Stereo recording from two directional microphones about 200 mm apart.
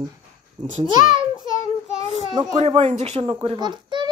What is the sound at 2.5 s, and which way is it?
Speech, 30° right (ahead or behind).